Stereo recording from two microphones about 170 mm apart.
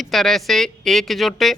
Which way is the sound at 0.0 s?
Centre (ahead or behind).